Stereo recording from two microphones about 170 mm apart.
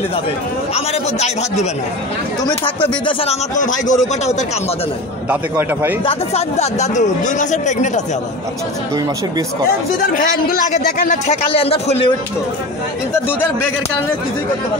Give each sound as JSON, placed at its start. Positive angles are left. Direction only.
{"t": 0.7, "sound": "a man's voice", "side_deg": 40}
{"t": 3.1, "sound": "a man's voice", "side_deg": 35}
{"t": 3.5, "sound": "speech", "side_deg": 50}
{"t": 5.3, "sound": "a man's voice", "side_deg": -10}
{"t": 6.0, "sound": "speech", "side_deg": 40}
{"t": 10.1, "sound": "speech", "side_deg": 55}
{"t": 11.1, "sound": "a man's voice", "side_deg": 40}